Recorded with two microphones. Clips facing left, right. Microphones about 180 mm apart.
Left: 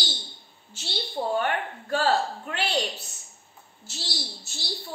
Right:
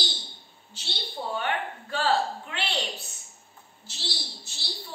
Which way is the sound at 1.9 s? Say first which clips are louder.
Left 2 dB; 40° left (ahead or behind).